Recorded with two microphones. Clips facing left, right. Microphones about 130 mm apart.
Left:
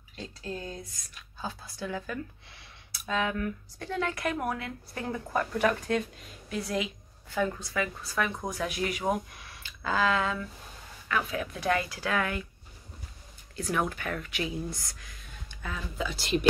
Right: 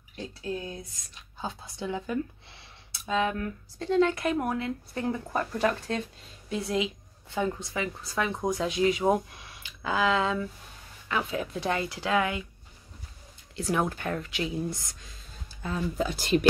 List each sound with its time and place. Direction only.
0.1 s a sound: 15° right (ahead or behind)
3.3 s a woman's voice: 25° right (ahead or behind)
13.6 s a woman's voice: 25° right (ahead or behind)